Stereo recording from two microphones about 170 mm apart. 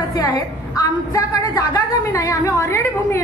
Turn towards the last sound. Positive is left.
turn(degrees=15)  # may be behind; listen again after turning